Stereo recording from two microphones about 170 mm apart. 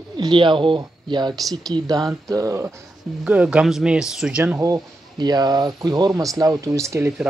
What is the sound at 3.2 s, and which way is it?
Speech, 5° right (ahead or behind).